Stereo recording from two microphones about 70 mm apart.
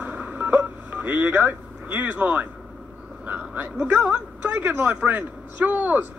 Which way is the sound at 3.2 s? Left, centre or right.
Right.